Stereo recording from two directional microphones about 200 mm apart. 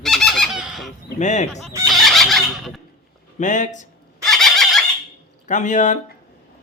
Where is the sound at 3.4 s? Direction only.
40° left (ahead or behind).